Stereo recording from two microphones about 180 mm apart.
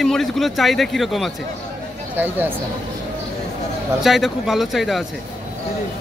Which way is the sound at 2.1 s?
10° right (ahead or behind).